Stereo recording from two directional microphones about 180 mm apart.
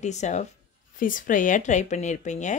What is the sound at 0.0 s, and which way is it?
Speech, 40° left (ahead or behind).